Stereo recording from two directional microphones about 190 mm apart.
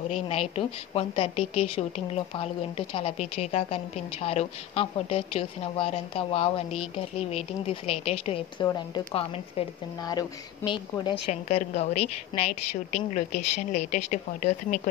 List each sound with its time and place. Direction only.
0.1 s a woman's voice: 35° left (ahead or behind)
11.4 s a woman's voice: 35° left (ahead or behind)